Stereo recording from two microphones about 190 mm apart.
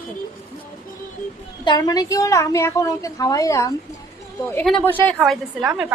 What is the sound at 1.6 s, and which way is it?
A woman's voice, 20° left (ahead or behind).